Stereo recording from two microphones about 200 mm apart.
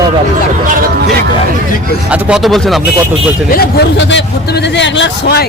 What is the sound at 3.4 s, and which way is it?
A man's voice, 50° left (ahead or behind).